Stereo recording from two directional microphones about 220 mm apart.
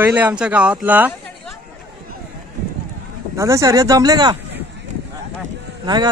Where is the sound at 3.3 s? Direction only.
15° right (ahead or behind).